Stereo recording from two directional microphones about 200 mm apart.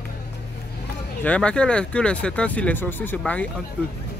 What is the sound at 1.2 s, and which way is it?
Speech, 5° left (ahead or behind).